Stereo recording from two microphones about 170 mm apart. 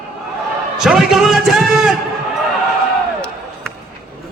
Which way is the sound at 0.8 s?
Centre (ahead or behind).